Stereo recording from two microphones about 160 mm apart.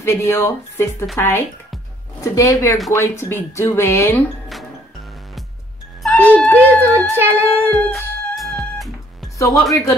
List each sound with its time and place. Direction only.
0.0 s speech: 15° left (ahead or behind)
6.0 s speech: 10° left (ahead or behind)
7.2 s humming: 15° right (ahead or behind)
7.9 s music: centre (ahead or behind)
9.4 s speech: 20° left (ahead or behind)